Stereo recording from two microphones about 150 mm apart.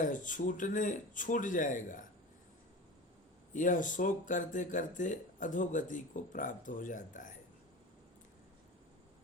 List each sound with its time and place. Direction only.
0.0 s speech: 60° left (ahead or behind)
3.5 s speech: 60° left (ahead or behind)